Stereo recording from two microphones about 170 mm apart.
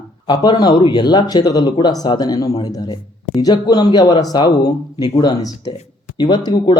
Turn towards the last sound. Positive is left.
turn(degrees=25)  # may be behind; listen again after turning